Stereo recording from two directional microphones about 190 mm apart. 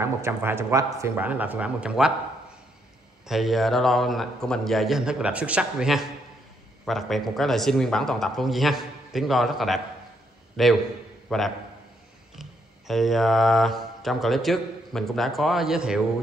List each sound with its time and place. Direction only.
0.0 s speech: 10° right (ahead or behind)
3.3 s a man's voice: centre (ahead or behind)